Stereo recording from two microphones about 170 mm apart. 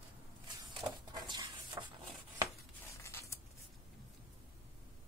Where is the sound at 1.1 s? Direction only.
25° right (ahead or behind).